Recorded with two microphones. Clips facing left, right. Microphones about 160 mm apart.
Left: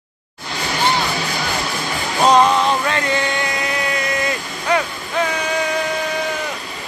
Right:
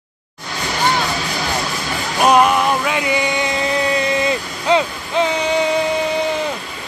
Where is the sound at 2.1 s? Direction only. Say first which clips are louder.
Even; 10° right (ahead or behind).